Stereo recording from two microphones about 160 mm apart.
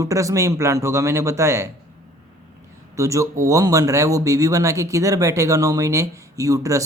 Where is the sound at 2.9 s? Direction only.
20° right (ahead or behind).